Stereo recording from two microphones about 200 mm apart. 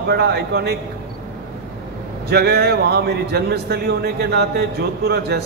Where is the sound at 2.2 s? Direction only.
55° right (ahead or behind).